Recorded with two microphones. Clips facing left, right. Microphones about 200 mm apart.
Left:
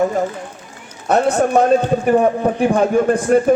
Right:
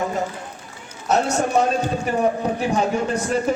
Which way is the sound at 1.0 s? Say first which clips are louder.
Left 5 dB; 55° left (ahead or behind).